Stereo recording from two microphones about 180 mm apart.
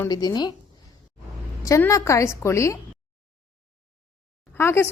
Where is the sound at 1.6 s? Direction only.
15° left (ahead or behind).